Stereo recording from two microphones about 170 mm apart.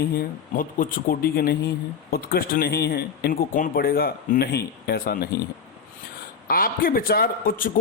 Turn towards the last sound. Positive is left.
turn(degrees=55)  # may be behind; listen again after turning